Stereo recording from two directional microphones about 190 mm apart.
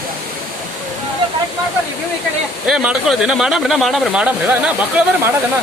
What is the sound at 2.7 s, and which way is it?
Speech, 5° right (ahead or behind).